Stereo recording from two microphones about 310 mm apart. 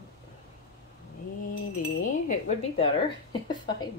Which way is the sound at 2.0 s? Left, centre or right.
Left.